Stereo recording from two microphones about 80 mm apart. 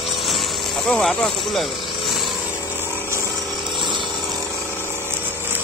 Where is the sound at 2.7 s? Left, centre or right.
Right.